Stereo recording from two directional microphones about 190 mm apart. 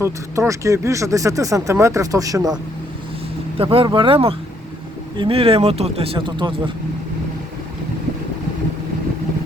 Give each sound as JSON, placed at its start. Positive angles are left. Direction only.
{"t": 0.0, "sound": "speech", "side_deg": -15}
{"t": 3.6, "sound": "speech", "side_deg": -30}